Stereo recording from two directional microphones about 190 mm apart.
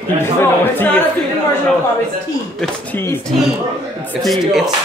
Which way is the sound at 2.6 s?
10° left (ahead or behind).